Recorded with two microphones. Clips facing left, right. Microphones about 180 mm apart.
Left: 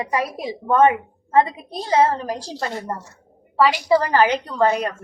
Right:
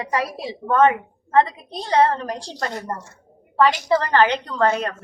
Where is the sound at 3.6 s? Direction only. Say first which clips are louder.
Left 1 dB; 10° left (ahead or behind).